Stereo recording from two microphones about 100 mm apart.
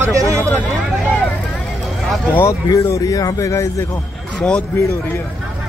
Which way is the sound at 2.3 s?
25° left (ahead or behind).